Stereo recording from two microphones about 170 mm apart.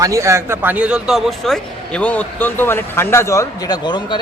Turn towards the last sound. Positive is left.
turn(degrees=25)  # may be behind; listen again after turning